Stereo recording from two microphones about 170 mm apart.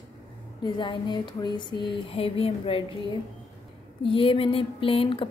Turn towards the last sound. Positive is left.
turn(degrees=30)  # may be behind; listen again after turning